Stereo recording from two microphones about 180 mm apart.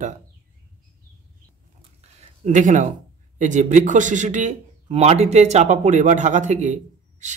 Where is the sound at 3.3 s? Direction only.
45° right (ahead or behind).